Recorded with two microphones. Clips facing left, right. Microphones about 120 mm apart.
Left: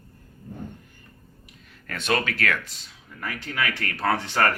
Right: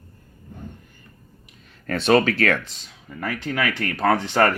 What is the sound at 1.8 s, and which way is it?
Speech, 35° right (ahead or behind).